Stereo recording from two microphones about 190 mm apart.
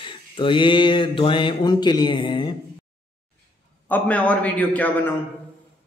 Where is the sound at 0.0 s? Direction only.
25° left (ahead or behind).